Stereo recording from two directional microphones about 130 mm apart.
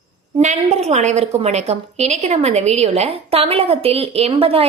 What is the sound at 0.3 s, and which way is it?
A woman's voice, 55° right (ahead or behind).